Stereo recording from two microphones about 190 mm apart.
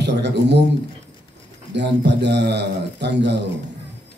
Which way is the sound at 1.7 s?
65° right (ahead or behind).